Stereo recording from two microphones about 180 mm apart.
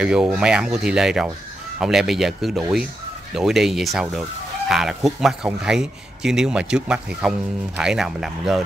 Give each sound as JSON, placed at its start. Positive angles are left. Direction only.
{"t": 0.0, "sound": "speech", "side_deg": -5}